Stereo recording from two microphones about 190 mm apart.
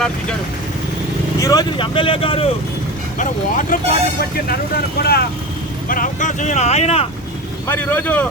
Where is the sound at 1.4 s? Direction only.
20° left (ahead or behind).